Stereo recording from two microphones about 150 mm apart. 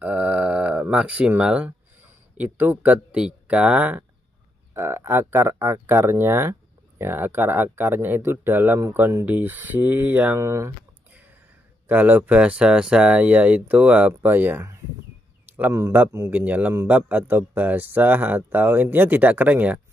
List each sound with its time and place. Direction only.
0.0 s a man's voice: 10° right (ahead or behind)
11.9 s a man's voice: 10° right (ahead or behind)